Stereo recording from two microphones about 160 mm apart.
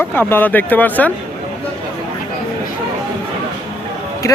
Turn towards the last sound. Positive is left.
turn(degrees=20)  # may be behind; listen again after turning